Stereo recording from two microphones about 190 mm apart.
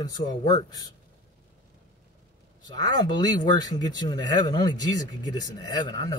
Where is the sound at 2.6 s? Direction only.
20° left (ahead or behind).